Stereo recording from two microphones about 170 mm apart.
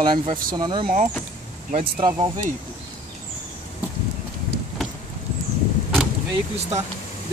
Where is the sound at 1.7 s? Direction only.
45° right (ahead or behind).